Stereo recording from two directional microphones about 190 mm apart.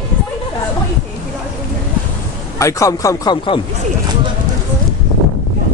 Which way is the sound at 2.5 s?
15° left (ahead or behind).